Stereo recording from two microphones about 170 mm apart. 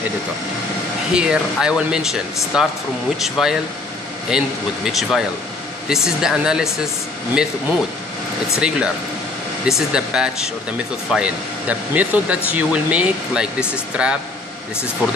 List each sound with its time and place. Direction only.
1.1 s speech: 5° right (ahead or behind)
8.5 s speech: 5° right (ahead or behind)